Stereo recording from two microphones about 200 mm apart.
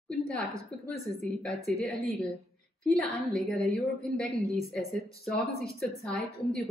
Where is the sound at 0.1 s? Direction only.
5° left (ahead or behind).